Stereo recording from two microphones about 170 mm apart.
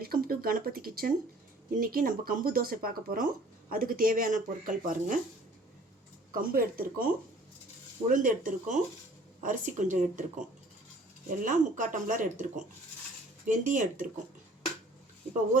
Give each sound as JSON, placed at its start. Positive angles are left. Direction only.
{"t": 0.0, "sound": "a sound", "side_deg": -60}
{"t": 1.7, "sound": "speech", "side_deg": -60}
{"t": 6.3, "sound": "speech", "side_deg": -60}
{"t": 11.4, "sound": "speech", "side_deg": -50}